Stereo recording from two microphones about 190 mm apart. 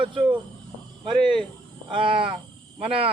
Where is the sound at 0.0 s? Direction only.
25° right (ahead or behind).